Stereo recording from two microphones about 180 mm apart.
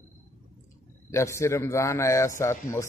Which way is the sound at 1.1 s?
15° left (ahead or behind).